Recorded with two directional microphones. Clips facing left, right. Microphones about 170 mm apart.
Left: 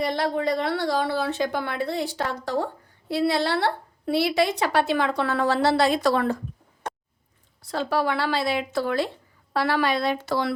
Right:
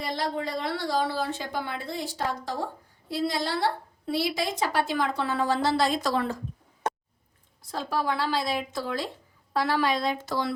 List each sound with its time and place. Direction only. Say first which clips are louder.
0.0 s a woman's voice: left 6 dB; 65° left (ahead or behind)
7.6 s a woman's voice: left 5 dB; 70° left (ahead or behind)